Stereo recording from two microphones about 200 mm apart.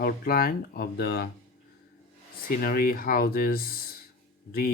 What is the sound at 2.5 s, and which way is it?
Speech, 45° left (ahead or behind).